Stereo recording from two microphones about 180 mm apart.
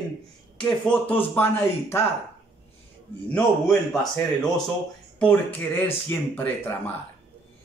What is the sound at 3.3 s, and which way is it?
A man's voice, 5° left (ahead or behind).